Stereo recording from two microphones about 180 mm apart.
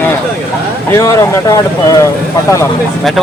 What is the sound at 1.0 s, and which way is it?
Speech, 20° left (ahead or behind).